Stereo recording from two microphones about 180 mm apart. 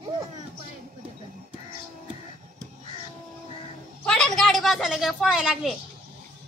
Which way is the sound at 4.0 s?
5° left (ahead or behind).